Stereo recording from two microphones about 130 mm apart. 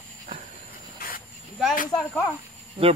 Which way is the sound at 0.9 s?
90° left.